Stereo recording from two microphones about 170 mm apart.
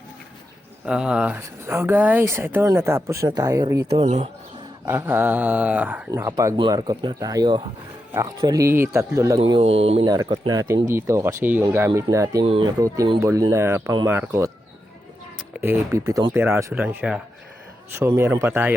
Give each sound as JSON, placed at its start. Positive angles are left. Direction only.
{"t": 0.9, "sound": "speech", "side_deg": -5}
{"t": 4.0, "sound": "speech", "side_deg": -40}
{"t": 4.9, "sound": "speech", "side_deg": -15}
{"t": 9.4, "sound": "speech", "side_deg": -35}
{"t": 12.5, "sound": "speech", "side_deg": -30}
{"t": 12.8, "sound": "speech", "side_deg": -20}
{"t": 15.5, "sound": "speech", "side_deg": -15}
{"t": 18.2, "sound": "speech", "side_deg": -15}